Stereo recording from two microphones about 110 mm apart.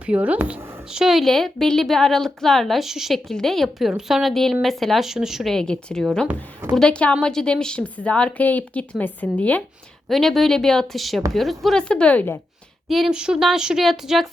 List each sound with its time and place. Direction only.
0.0 s a woman's voice: 15° right (ahead or behind); by 6.2 s 5° left (ahead or behind)
6.2 s speech: 20° right (ahead or behind)
6.7 s a woman's voice: 10° left (ahead or behind)
10.1 s a woman's voice: centre (ahead or behind)
12.9 s a woman's voice: 5° right (ahead or behind)